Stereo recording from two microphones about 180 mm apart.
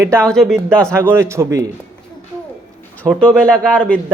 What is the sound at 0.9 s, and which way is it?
Speech, 15° right (ahead or behind).